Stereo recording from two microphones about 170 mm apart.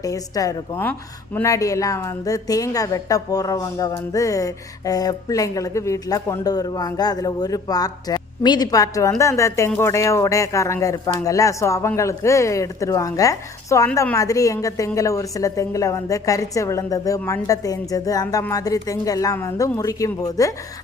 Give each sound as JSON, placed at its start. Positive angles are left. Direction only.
{"t": 0.0, "sound": "a woman's voice", "side_deg": 20}